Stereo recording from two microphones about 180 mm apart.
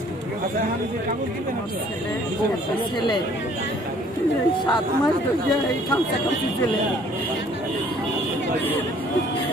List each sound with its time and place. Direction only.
4.6 s speech: 25° left (ahead or behind)